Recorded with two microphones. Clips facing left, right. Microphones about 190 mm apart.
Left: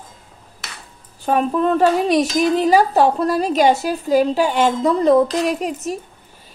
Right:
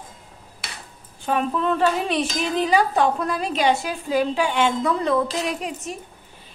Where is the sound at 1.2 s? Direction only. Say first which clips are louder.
Left 5 dB; 40° left (ahead or behind).